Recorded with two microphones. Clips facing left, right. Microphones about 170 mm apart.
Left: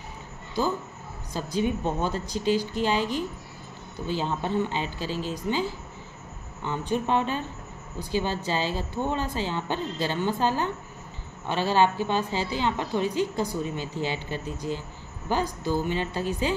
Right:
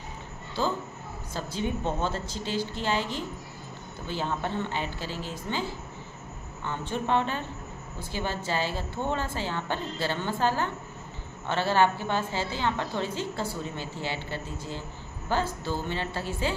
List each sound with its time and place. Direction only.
1.3 s a woman's voice: 15° left (ahead or behind)